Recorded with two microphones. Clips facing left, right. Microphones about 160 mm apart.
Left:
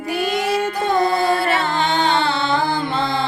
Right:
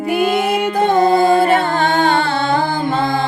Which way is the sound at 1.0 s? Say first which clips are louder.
Right 6 dB; 45° right (ahead or behind).